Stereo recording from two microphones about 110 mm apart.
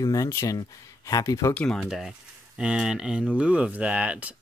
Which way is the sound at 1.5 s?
10° left (ahead or behind).